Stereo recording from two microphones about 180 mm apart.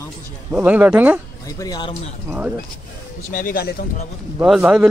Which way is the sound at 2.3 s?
10° right (ahead or behind).